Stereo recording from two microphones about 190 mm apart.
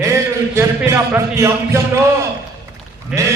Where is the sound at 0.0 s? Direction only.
15° right (ahead or behind).